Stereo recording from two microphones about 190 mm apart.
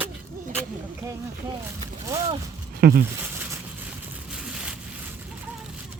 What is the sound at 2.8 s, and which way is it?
Speech, 50° right (ahead or behind).